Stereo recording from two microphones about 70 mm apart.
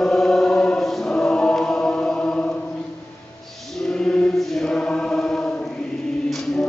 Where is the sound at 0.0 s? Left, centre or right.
Centre.